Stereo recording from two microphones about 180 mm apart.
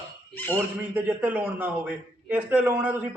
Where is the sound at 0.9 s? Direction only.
10° right (ahead or behind).